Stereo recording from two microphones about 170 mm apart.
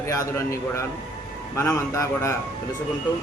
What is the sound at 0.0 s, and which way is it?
A man's voice, 20° left (ahead or behind).